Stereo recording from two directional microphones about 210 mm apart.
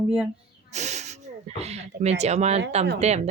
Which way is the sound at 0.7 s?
35° right (ahead or behind).